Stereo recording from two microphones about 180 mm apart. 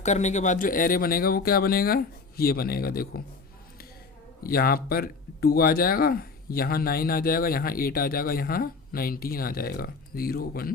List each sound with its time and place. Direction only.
0.0 s speech: 40° left (ahead or behind); by 3.2 s 55° left (ahead or behind)
4.4 s speech: 55° left (ahead or behind)